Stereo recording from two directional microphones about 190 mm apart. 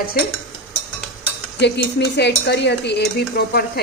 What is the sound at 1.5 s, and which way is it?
Cutlery, 60° left (ahead or behind).